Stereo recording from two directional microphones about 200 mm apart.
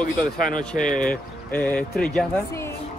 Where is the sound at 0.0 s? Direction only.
40° left (ahead or behind).